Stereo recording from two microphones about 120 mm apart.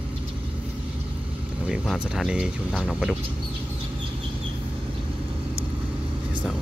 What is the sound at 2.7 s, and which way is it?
Speech, 5° left (ahead or behind).